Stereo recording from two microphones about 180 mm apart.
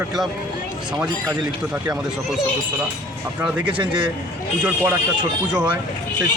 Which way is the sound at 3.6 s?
25° right (ahead or behind).